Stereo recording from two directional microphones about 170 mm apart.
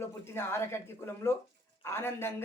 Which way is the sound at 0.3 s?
15° left (ahead or behind).